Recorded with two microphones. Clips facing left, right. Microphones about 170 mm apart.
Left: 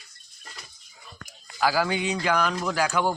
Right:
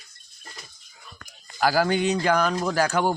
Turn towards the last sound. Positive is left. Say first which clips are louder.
# right 2 dB
turn(degrees=-45)  # may be behind; listen again after turning